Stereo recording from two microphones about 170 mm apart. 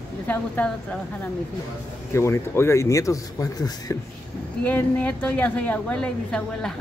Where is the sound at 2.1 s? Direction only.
15° left (ahead or behind).